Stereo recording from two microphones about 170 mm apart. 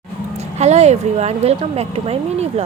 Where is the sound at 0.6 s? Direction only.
40° right (ahead or behind).